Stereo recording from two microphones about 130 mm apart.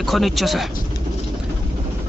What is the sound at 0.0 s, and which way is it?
Speech, centre (ahead or behind).